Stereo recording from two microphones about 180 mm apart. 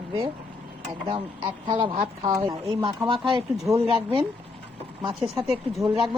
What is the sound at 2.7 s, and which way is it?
Speech, 30° right (ahead or behind).